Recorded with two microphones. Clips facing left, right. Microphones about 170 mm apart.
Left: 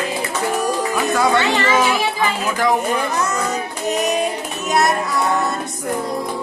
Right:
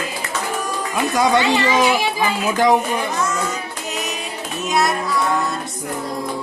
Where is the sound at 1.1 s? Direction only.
15° right (ahead or behind).